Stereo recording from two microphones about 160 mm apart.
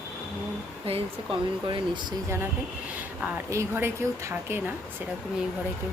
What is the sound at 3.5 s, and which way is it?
Speech, 15° right (ahead or behind).